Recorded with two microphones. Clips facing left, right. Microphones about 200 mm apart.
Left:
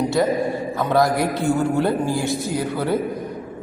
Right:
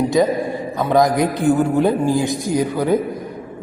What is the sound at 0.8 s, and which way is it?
A man's voice, 15° right (ahead or behind).